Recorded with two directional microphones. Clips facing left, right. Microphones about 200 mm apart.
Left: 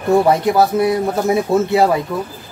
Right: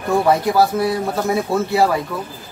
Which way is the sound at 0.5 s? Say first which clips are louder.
Left 2 dB; 20° left (ahead or behind).